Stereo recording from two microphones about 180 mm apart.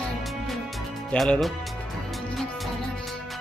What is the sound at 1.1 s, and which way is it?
Speech, centre (ahead or behind).